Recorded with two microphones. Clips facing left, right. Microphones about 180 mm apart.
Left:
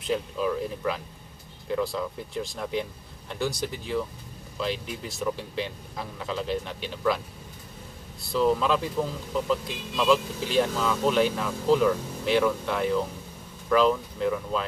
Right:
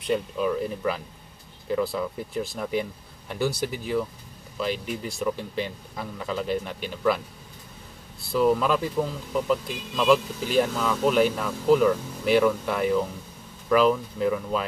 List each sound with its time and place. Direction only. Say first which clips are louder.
0.0 s speech: right 2 dB; centre (ahead or behind)
8.2 s speech: right 2 dB; 5° right (ahead or behind)